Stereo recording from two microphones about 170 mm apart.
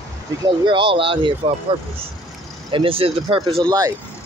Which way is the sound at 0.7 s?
30° right (ahead or behind).